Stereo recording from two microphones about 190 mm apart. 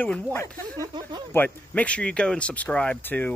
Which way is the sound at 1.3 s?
10° left (ahead or behind).